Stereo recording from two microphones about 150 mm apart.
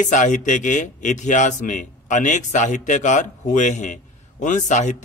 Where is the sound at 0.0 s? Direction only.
55° left (ahead or behind).